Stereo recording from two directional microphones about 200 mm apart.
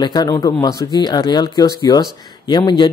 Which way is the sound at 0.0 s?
20° left (ahead or behind).